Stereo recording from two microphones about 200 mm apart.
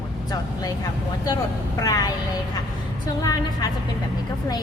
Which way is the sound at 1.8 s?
20° left (ahead or behind).